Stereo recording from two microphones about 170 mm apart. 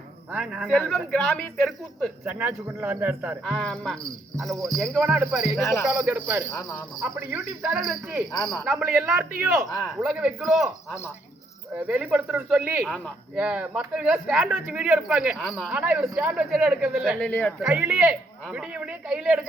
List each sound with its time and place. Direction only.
0.3 s speech: 5° right (ahead or behind)
2.2 s speech: 10° right (ahead or behind)
3.4 s speech: 5° left (ahead or behind)
4.4 s speech: 20° right (ahead or behind)
4.8 s speech: 5° right (ahead or behind)
7.8 s speech: centre (ahead or behind)
9.6 s speech: 20° left (ahead or behind)
10.0 s speech: 5° right (ahead or behind)
11.8 s speech: 10° right (ahead or behind)
17.2 s speech: 10° left (ahead or behind)
17.6 s speech: 5° right (ahead or behind)